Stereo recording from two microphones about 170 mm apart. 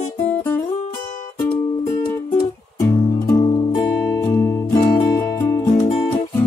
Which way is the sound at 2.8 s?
20° left (ahead or behind).